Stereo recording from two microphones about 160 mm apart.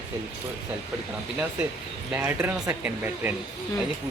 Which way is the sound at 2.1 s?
10° right (ahead or behind).